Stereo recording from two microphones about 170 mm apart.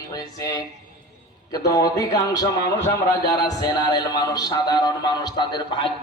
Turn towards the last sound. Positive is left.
turn(degrees=25)  # may be behind; listen again after turning